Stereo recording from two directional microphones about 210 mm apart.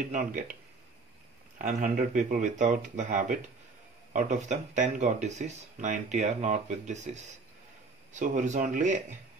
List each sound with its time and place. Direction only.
0.1 s speech: 40° right (ahead or behind)
1.6 s speech: 35° right (ahead or behind)
8.1 s speech: 35° right (ahead or behind)